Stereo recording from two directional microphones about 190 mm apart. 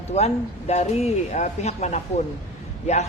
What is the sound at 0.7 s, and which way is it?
A man's voice, 35° left (ahead or behind).